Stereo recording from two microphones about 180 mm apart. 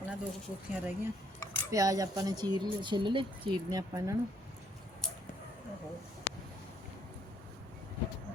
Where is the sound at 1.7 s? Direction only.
20° right (ahead or behind).